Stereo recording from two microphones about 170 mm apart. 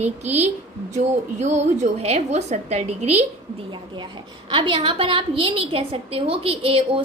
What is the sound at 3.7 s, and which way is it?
A woman's voice, 25° right (ahead or behind).